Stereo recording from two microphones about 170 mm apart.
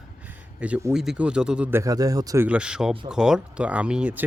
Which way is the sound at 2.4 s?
5° right (ahead or behind).